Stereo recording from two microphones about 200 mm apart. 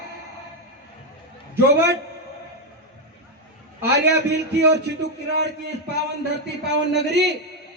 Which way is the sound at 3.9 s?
55° right (ahead or behind).